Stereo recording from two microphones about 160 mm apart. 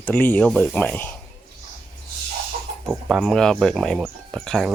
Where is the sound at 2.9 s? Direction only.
Centre (ahead or behind).